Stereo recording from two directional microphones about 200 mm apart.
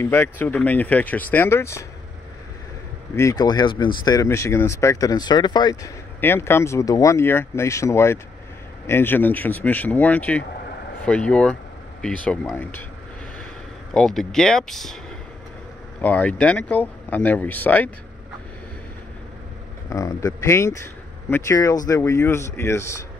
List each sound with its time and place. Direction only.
0.0 s speech: 10° left (ahead or behind)
3.2 s speech: 15° left (ahead or behind)
13.9 s speech: centre (ahead or behind)
16.0 s speech: 5° left (ahead or behind)
19.9 s speech: 15° left (ahead or behind)